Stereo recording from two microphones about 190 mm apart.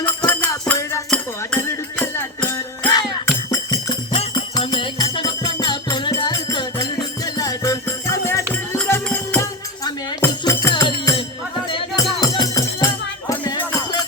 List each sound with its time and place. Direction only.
0.3 s music: 10° left (ahead or behind)
3.2 s music: 20° left (ahead or behind)